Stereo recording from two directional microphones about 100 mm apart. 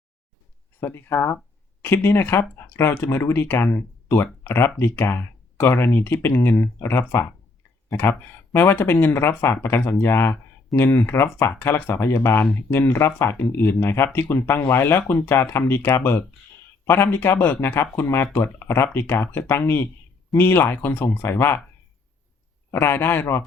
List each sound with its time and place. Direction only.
0.8 s speech: 20° left (ahead or behind)
8.5 s speech: 25° left (ahead or behind)
22.7 s speech: 25° left (ahead or behind)